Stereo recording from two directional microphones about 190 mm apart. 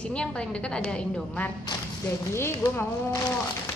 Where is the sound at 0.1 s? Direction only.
5° left (ahead or behind).